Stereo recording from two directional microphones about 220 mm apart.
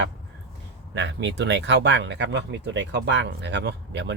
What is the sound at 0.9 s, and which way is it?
Speech, 55° right (ahead or behind).